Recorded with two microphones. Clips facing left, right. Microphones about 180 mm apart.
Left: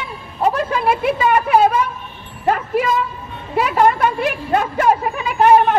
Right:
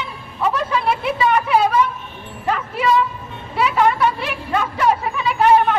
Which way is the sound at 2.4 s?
50° left (ahead or behind).